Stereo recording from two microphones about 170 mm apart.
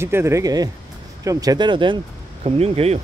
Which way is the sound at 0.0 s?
15° right (ahead or behind).